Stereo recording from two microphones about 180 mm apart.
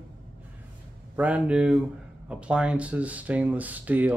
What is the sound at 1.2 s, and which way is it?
Speech, 5° right (ahead or behind).